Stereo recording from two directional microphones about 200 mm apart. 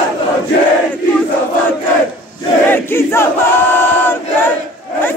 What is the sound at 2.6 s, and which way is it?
Battle cry, 10° left (ahead or behind).